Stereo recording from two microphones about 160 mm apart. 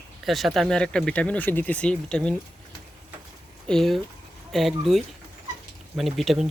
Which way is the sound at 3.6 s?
Centre (ahead or behind).